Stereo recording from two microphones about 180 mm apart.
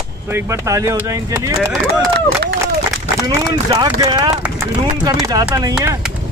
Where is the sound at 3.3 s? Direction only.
20° right (ahead or behind).